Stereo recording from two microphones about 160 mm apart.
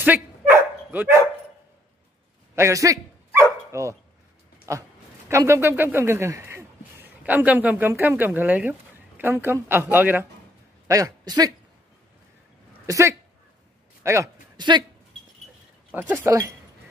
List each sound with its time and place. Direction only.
0.0 s dog: 10° right (ahead or behind)
2.5 s dog: 20° right (ahead or behind)
3.7 s a woman's voice: 15° right (ahead or behind)
12.8 s a woman's voice: 20° right (ahead or behind)
15.9 s a woman's voice: 15° right (ahead or behind)